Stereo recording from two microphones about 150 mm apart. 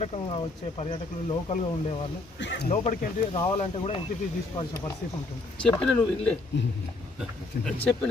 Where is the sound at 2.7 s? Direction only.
50° left (ahead or behind).